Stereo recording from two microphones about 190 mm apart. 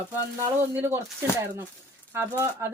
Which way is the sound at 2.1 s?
10° right (ahead or behind).